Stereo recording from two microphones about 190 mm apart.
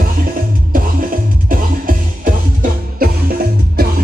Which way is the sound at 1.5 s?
45° right (ahead or behind).